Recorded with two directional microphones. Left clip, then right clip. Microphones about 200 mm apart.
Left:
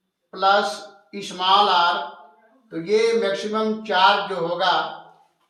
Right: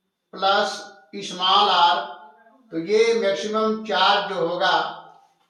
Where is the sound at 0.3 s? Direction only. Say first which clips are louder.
Left 2 dB; 15° left (ahead or behind).